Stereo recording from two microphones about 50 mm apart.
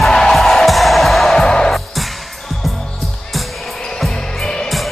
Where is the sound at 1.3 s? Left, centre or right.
Centre.